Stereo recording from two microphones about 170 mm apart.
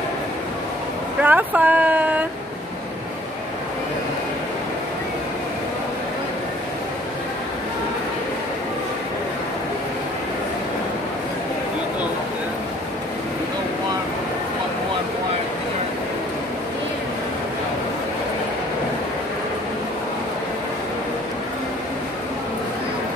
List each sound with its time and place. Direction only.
1.2 s speech: 10° right (ahead or behind)